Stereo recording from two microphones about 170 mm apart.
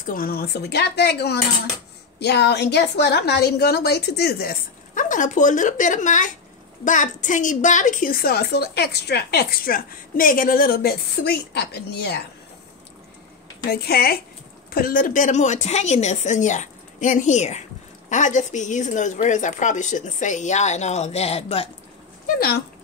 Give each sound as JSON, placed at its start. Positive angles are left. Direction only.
{"t": 0.0, "sound": "a woman's voice", "side_deg": 55}
{"t": 13.7, "sound": "a woman's voice", "side_deg": 65}
{"t": 22.2, "sound": "speech", "side_deg": 65}